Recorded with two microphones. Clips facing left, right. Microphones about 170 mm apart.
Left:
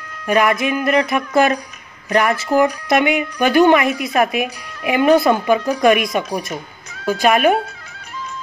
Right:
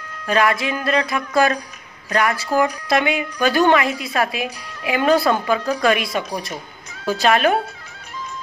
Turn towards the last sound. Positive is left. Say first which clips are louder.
# left 3 dB
turn(degrees=15)  # may be behind; listen again after turning